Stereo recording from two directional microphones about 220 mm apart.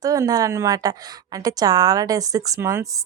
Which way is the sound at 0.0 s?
15° right (ahead or behind).